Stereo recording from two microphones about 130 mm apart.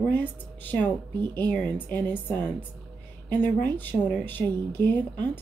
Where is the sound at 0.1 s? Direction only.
15° left (ahead or behind).